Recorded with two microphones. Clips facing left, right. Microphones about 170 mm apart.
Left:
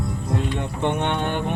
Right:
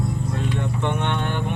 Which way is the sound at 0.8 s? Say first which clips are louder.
Left 4 dB; 15° left (ahead or behind).